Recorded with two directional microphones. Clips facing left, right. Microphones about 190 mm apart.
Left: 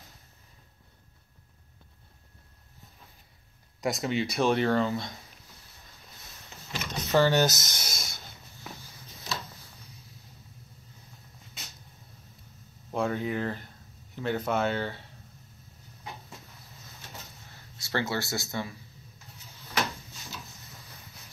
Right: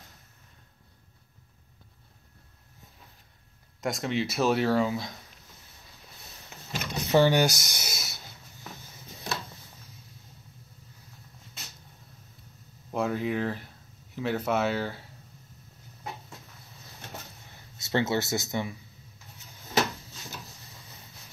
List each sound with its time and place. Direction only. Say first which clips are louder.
3.8 s speech: even; centre (ahead or behind)
6.7 s drawer open or close: right 2 dB; 15° right (ahead or behind)
9.3 s a sound: right 2 dB; 55° right (ahead or behind)
12.9 s speech: right 1 dB; centre (ahead or behind)
17.7 s speech: right 4 dB; 20° right (ahead or behind)